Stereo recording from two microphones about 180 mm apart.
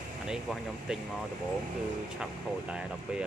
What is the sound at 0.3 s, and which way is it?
Speech, 5° right (ahead or behind).